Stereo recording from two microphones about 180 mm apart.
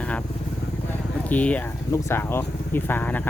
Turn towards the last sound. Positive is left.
turn(degrees=10)  # may be behind; listen again after turning